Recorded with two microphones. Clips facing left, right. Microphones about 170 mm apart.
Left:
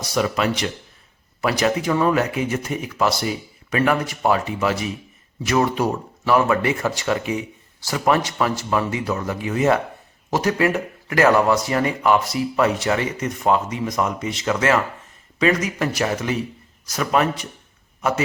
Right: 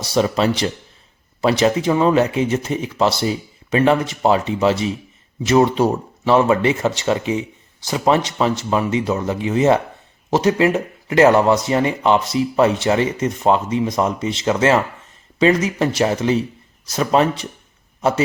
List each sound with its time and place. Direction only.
0.0 s speech: 30° right (ahead or behind)